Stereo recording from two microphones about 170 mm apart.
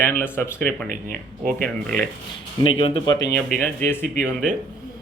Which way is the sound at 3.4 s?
5° left (ahead or behind).